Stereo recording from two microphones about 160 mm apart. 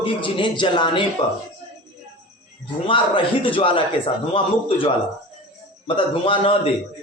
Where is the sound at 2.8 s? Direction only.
30° left (ahead or behind).